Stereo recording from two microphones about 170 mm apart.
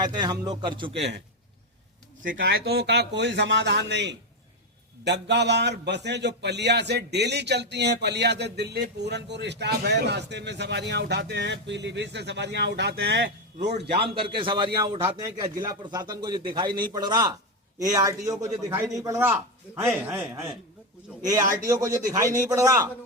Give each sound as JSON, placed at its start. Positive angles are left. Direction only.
{"t": 0.2, "sound": "a man's voice", "side_deg": -25}
{"t": 2.4, "sound": "a man's voice", "side_deg": -75}
{"t": 13.8, "sound": "a man's voice", "side_deg": -75}
{"t": 14.2, "sound": "a man's voice", "side_deg": -30}